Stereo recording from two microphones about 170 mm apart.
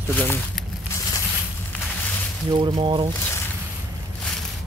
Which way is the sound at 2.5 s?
30° right (ahead or behind).